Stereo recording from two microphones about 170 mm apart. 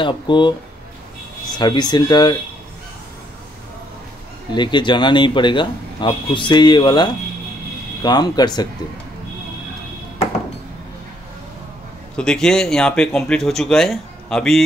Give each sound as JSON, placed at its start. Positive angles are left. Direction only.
{"t": 0.0, "sound": "a man's voice", "side_deg": 25}
{"t": 1.6, "sound": "a man's voice", "side_deg": 25}
{"t": 4.6, "sound": "a man's voice", "side_deg": 25}
{"t": 12.2, "sound": "speech", "side_deg": 5}